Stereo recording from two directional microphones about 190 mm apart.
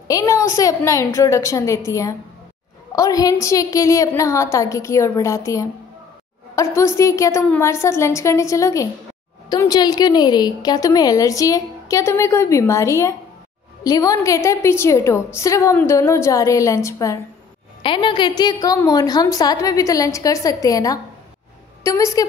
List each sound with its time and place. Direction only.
0.1 s a woman's voice: 20° left (ahead or behind)
17.8 s a woman's voice: 25° left (ahead or behind)